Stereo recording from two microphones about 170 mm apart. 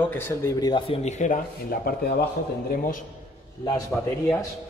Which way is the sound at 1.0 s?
45° left (ahead or behind).